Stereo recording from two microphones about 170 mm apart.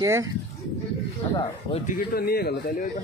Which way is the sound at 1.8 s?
55° left (ahead or behind).